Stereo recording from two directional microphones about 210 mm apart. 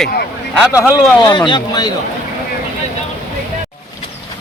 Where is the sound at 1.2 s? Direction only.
20° left (ahead or behind).